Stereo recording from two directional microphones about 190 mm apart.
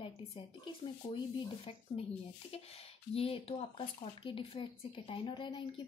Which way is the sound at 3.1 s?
30° left (ahead or behind).